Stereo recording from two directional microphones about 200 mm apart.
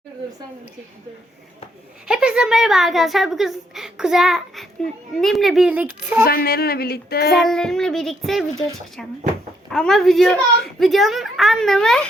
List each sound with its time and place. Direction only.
2.0 s speech: 5° right (ahead or behind)
6.2 s speech: 50° left (ahead or behind)
7.3 s speech: centre (ahead or behind)